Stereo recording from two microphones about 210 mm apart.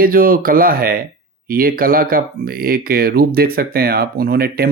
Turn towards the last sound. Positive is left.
turn(degrees=-45)  # may be behind; listen again after turning